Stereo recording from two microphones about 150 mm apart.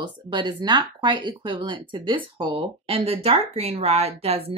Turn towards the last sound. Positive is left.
turn(degrees=-40)  # may be behind; listen again after turning